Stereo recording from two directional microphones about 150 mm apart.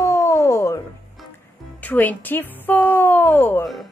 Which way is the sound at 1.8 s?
10° left (ahead or behind).